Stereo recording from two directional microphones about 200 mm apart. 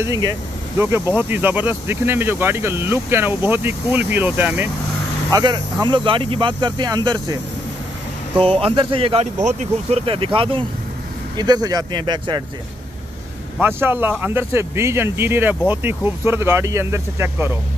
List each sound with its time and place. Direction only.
0.0 s speech: 20° right (ahead or behind)
5.3 s speech: 20° right (ahead or behind)
8.4 s speech: 30° right (ahead or behind)
13.6 s speech: 10° right (ahead or behind)